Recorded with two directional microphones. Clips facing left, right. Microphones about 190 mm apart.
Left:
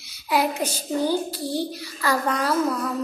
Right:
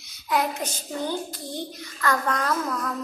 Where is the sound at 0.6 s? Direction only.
35° left (ahead or behind).